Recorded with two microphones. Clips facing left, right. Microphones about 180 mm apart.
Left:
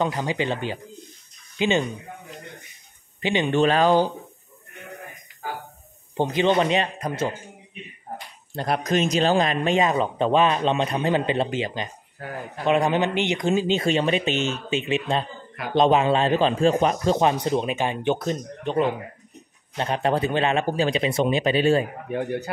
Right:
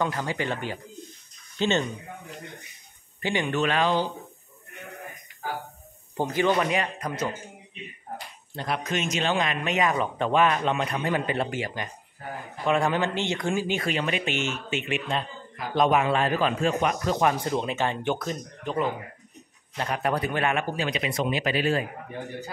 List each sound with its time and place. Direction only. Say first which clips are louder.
0.0 s speech: left 3 dB; 20° left (ahead or behind)
3.2 s speech: left 5 dB; 20° left (ahead or behind); by 4.1 s 45° left (ahead or behind)
6.1 s speech: left 3 dB; 25° left (ahead or behind)
8.5 s speech: left 6 dB; 40° left (ahead or behind)